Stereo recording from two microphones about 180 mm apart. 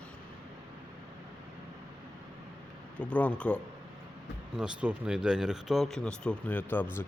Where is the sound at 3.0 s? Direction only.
5° left (ahead or behind).